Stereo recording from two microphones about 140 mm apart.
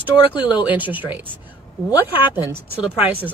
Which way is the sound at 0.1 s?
35° left (ahead or behind).